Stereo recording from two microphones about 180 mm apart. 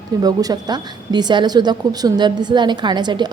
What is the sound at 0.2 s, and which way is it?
Speech, 20° right (ahead or behind).